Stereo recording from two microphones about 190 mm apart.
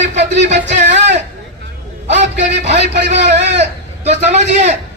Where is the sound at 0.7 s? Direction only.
35° right (ahead or behind).